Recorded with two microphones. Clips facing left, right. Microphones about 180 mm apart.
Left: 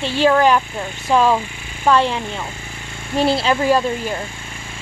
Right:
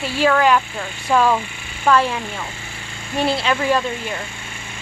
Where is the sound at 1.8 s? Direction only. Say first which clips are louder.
Left 1 dB; 25° left (ahead or behind).